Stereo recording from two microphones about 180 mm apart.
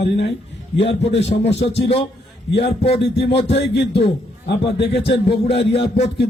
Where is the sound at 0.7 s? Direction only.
80° left.